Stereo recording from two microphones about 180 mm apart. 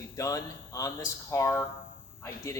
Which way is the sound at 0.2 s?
20° left (ahead or behind).